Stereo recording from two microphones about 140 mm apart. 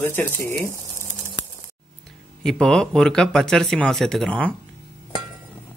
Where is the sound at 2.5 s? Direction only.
5° left (ahead or behind).